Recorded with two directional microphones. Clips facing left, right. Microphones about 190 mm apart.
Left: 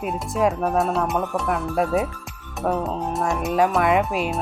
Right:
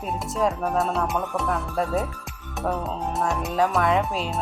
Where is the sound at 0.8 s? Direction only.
Centre (ahead or behind).